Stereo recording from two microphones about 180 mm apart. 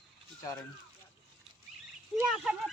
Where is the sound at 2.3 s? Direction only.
Centre (ahead or behind).